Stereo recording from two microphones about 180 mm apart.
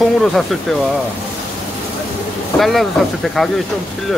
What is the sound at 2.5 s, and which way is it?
Speech, centre (ahead or behind).